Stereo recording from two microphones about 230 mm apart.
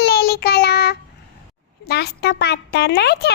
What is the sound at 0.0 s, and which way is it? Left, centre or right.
Child singing, left.